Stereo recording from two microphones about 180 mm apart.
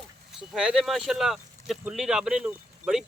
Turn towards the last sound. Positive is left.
turn(degrees=-5)  # may be behind; listen again after turning